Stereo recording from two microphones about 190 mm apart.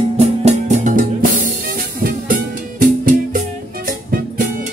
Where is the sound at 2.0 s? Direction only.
45° right (ahead or behind).